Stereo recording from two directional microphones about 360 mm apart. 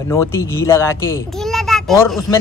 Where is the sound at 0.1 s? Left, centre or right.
Centre.